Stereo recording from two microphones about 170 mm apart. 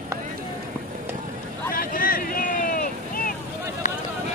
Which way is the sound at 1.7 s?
55° left (ahead or behind).